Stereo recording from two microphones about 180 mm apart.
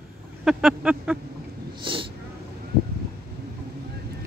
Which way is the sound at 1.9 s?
30° right (ahead or behind).